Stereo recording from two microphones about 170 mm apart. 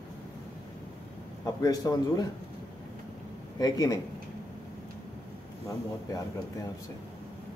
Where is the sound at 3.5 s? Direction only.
20° left (ahead or behind).